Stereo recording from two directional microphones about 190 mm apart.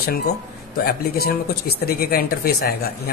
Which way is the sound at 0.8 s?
55° left (ahead or behind).